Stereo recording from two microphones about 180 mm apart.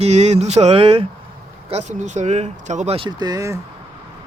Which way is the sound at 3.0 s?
20° right (ahead or behind).